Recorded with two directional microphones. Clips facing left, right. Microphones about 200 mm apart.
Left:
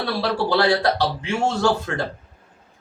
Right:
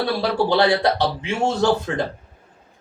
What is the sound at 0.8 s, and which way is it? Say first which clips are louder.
A man's voice: right 1 dB; 20° right (ahead or behind).